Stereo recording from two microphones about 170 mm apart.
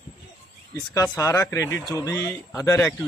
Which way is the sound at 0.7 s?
20° left (ahead or behind).